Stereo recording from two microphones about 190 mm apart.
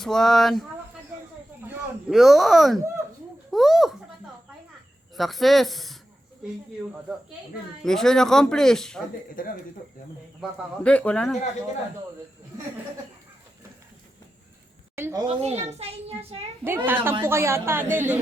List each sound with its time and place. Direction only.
0.0 s speech: centre (ahead or behind)
1.6 s speech: centre (ahead or behind)
5.1 s speech: centre (ahead or behind)
7.9 s speech: 5° left (ahead or behind)
9.3 s speech: 45° left (ahead or behind)
10.8 s speech: 5° left (ahead or behind)
14.9 s speech: 15° right (ahead or behind)
15.4 s a child's voice: 35° right (ahead or behind)
16.6 s speech: 10° right (ahead or behind)